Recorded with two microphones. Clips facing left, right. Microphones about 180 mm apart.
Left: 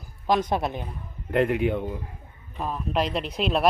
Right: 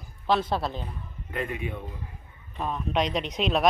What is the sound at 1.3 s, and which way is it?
Speech, 75° left (ahead or behind).